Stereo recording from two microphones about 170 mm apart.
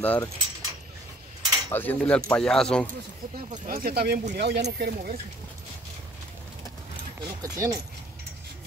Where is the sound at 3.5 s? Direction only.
55° right (ahead or behind).